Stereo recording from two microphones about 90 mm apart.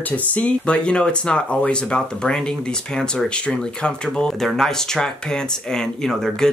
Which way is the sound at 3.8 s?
10° left (ahead or behind).